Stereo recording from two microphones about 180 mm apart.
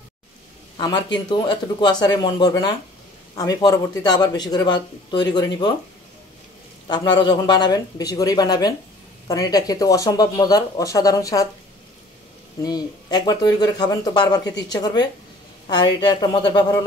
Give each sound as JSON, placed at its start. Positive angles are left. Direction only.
{"t": 0.7, "sound": "speech", "side_deg": 25}
{"t": 6.9, "sound": "speech", "side_deg": 25}
{"t": 12.6, "sound": "speech", "side_deg": 20}